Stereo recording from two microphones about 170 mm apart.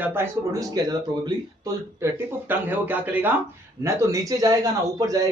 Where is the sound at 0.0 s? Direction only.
15° right (ahead or behind).